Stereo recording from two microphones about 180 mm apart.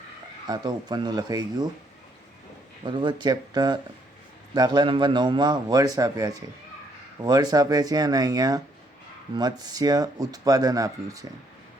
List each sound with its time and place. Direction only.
0.4 s speech: 25° right (ahead or behind)
2.8 s speech: 25° right (ahead or behind)